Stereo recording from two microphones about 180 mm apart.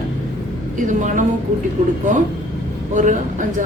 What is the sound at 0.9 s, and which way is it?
Speech, 45° right (ahead or behind).